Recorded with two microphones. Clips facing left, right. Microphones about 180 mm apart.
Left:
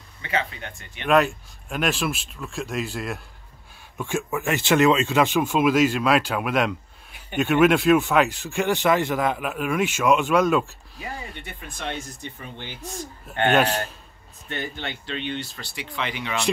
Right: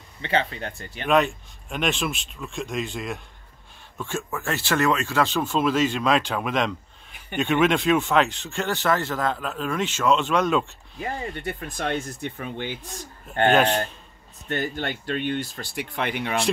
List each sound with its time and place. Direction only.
0.2 s speech: 30° right (ahead or behind)
1.0 s speech: centre (ahead or behind)
11.0 s speech: 45° right (ahead or behind); by 12.7 s 60° right (ahead or behind)
13.5 s speech: centre (ahead or behind)
14.5 s speech: 45° right (ahead or behind)